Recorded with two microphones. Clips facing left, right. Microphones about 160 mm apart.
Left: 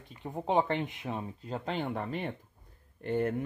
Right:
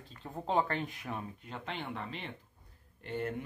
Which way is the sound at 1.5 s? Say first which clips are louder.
Left 8 dB; 40° left (ahead or behind).